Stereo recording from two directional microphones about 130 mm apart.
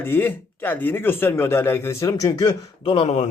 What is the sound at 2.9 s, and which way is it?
Speech, 60° left (ahead or behind).